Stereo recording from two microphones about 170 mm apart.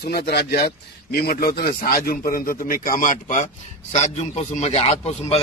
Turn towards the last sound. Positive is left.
turn(degrees=40)  # may be behind; listen again after turning